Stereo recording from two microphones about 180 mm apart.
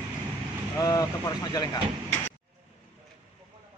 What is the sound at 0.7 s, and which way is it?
Speech, 20° left (ahead or behind).